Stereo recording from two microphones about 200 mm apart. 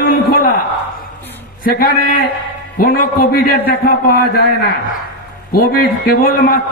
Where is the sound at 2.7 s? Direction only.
45° left (ahead or behind).